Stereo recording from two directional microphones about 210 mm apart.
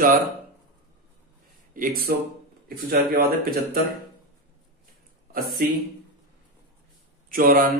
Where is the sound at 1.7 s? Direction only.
40° right (ahead or behind).